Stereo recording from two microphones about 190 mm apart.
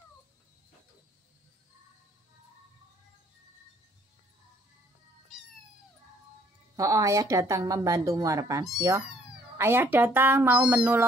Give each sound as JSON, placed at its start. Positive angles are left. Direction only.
{"t": 6.8, "sound": "speech", "side_deg": -15}